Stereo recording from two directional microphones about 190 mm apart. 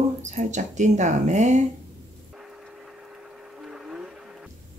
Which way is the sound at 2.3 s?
Centre (ahead or behind).